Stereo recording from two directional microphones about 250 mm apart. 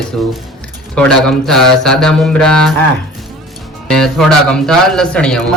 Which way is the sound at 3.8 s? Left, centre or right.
Centre.